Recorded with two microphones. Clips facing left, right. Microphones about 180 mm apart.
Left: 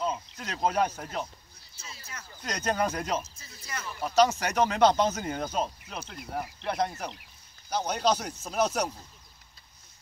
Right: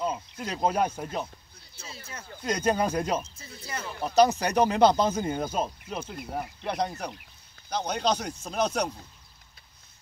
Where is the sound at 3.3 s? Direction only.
30° right (ahead or behind); by 8.9 s 5° left (ahead or behind).